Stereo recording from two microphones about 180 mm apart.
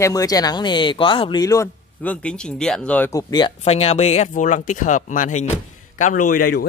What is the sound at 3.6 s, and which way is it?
Speech, 35° left (ahead or behind).